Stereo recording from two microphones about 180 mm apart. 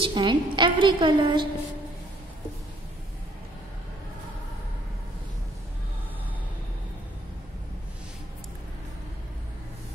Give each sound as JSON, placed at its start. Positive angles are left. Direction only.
{"t": 0.0, "sound": "a woman's voice", "side_deg": -25}